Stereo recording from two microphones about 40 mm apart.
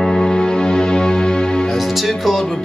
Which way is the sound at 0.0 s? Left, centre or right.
Left.